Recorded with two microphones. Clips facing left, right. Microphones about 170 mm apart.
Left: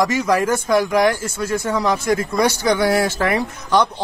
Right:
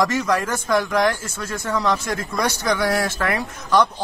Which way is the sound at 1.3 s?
20° left (ahead or behind).